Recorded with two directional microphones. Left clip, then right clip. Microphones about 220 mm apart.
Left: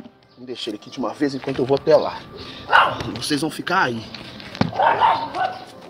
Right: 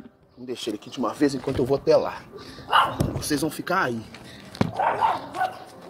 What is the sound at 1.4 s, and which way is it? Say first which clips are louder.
Speech: left 6 dB; 30° right (ahead or behind).